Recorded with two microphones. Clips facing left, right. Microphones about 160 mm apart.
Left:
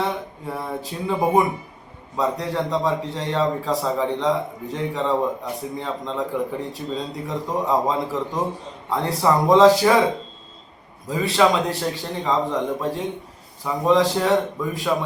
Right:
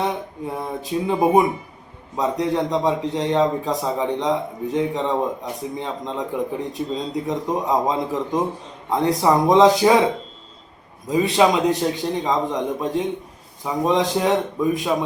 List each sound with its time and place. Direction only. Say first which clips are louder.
0.8 s a man's voice: right 5 dB; 20° right (ahead or behind)
11.1 s a man's voice: right 2 dB; 20° right (ahead or behind)